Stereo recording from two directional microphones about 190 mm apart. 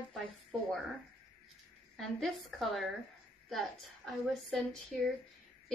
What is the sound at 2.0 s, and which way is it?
Speech, centre (ahead or behind).